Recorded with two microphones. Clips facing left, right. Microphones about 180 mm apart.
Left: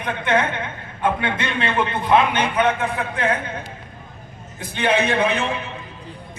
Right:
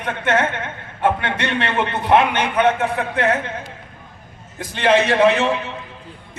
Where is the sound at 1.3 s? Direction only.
75° right (ahead or behind).